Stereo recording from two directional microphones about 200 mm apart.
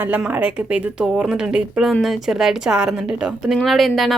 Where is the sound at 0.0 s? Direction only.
10° right (ahead or behind).